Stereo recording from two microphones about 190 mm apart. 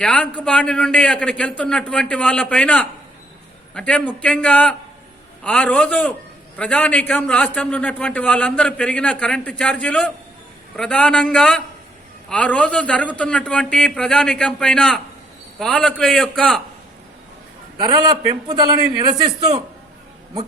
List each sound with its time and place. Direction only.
0.0 s a man's voice: 5° left (ahead or behind)
17.7 s a man's voice: 20° right (ahead or behind)